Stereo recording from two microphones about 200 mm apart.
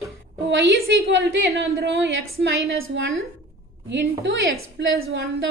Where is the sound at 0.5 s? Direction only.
65° right (ahead or behind).